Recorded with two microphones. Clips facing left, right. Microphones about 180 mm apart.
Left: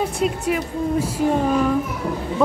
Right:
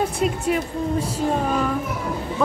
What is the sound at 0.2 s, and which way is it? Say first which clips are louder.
Speech: even; centre (ahead or behind).